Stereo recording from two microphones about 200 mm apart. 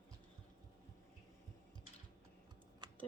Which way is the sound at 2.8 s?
20° right (ahead or behind).